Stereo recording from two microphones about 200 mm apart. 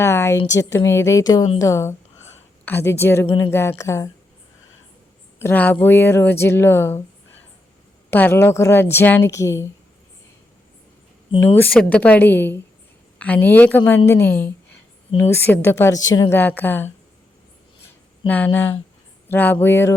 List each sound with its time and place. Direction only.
0.0 s a sound: 15° left (ahead or behind)
0.5 s a woman's voice: 15° left (ahead or behind)
5.4 s a woman's voice: 10° left (ahead or behind)
8.1 s a woman's voice: 10° left (ahead or behind)
11.3 s a woman's voice: 10° left (ahead or behind)
18.3 s a woman's voice: 10° left (ahead or behind)